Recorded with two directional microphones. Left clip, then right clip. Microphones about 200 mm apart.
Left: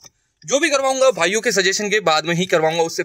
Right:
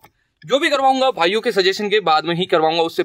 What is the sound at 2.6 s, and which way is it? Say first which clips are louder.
Speech: right 1 dB; 10° right (ahead or behind).